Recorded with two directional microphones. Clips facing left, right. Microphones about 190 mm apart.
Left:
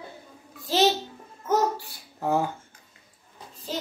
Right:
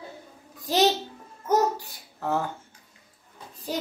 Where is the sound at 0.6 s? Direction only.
15° right (ahead or behind).